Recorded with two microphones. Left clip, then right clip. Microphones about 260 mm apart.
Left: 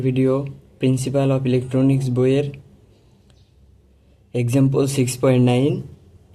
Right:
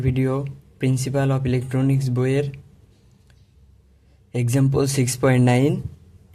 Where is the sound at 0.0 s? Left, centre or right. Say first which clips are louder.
Left 5 dB; right.